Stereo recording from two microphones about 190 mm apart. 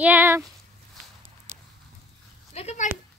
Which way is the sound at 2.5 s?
35° left (ahead or behind).